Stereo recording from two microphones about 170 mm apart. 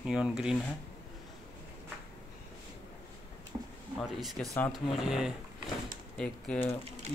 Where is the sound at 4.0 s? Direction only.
Centre (ahead or behind).